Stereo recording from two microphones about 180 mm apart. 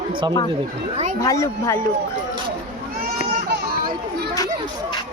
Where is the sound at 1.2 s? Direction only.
15° left (ahead or behind).